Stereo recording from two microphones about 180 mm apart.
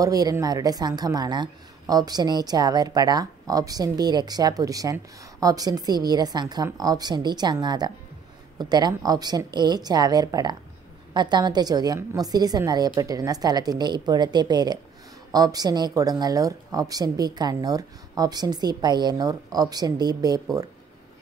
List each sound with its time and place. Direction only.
0.0 s a woman's voice: 20° right (ahead or behind)